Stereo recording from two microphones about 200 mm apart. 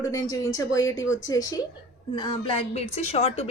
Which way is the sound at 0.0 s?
15° left (ahead or behind).